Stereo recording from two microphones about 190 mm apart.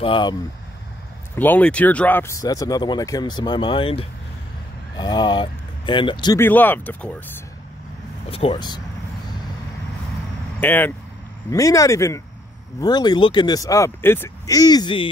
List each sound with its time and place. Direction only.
0.0 s speech: 25° left (ahead or behind)
1.3 s speech: 10° left (ahead or behind)
6.4 s speech: 10° left (ahead or behind)
8.3 s speech: 30° left (ahead or behind)
10.6 s speech: 10° left (ahead or behind)